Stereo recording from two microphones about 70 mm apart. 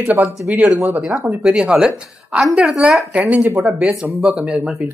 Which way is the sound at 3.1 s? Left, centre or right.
Right.